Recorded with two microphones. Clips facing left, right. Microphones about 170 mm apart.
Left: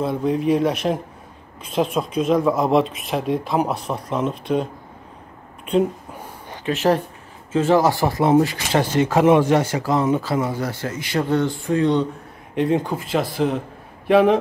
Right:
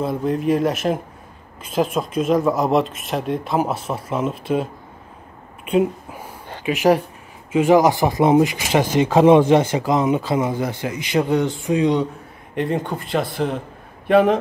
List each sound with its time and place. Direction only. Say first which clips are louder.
0.0 s speech: even; centre (ahead or behind)
6.6 s speech: right 2 dB; 10° right (ahead or behind)
12.5 s speech: left 2 dB; centre (ahead or behind)